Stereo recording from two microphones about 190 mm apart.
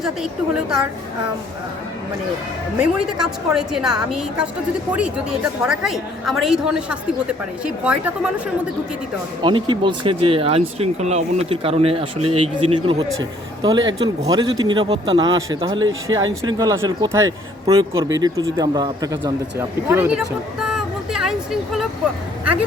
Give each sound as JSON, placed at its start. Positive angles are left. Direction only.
{"t": 0.0, "sound": "a woman's voice", "side_deg": -5}
{"t": 2.7, "sound": "a woman's voice", "side_deg": -5}
{"t": 9.4, "sound": "speech", "side_deg": -25}